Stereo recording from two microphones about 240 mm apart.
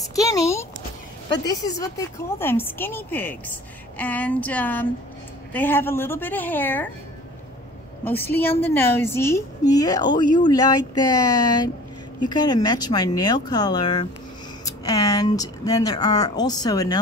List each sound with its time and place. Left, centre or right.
0.1 s speech: centre
8.0 s speech: centre